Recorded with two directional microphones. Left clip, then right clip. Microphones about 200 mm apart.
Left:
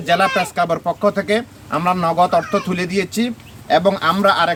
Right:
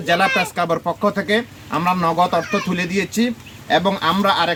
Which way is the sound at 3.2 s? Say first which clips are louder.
Even; 20° left (ahead or behind).